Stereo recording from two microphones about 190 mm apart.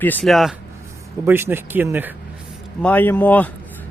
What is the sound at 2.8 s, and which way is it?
Speech, 10° left (ahead or behind).